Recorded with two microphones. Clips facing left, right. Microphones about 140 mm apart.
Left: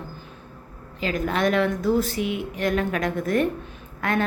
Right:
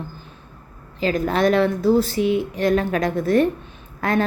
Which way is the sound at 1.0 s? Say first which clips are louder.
Right 4 dB; 35° right (ahead or behind).